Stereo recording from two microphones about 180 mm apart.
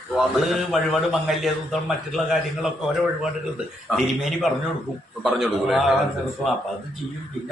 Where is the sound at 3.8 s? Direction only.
Centre (ahead or behind).